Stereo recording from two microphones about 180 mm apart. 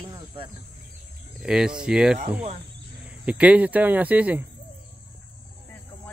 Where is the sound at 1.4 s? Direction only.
5° right (ahead or behind).